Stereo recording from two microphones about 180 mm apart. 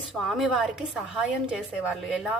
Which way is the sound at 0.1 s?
Centre (ahead or behind).